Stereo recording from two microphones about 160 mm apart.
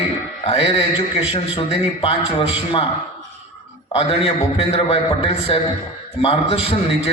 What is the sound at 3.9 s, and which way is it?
A man's voice, 35° left (ahead or behind).